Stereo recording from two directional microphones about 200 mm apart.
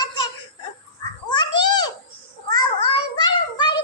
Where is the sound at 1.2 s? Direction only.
20° left (ahead or behind).